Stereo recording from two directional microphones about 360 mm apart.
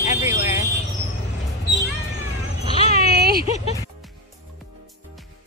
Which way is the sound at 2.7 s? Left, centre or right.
Centre.